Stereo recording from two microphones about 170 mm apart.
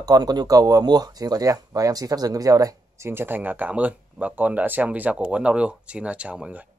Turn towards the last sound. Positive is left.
turn(degrees=-5)  # may be behind; listen again after turning